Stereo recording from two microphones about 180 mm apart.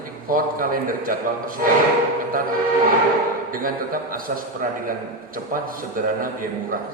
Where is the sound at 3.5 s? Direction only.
50° right (ahead or behind).